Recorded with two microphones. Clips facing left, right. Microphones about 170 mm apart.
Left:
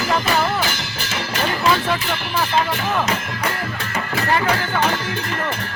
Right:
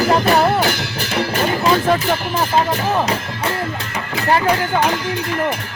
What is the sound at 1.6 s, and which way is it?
Music, 40° right (ahead or behind).